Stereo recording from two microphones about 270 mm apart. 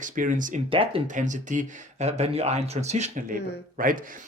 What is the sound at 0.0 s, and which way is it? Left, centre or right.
Speech, right.